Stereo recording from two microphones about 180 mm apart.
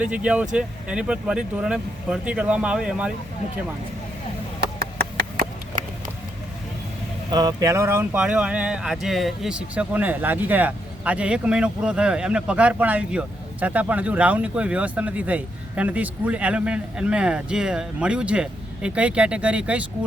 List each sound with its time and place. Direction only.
0.0 s speech: 5° right (ahead or behind)
4.6 s a sound: 60° right (ahead or behind)
7.3 s speech: 20° right (ahead or behind); by 19.8 s 5° right (ahead or behind)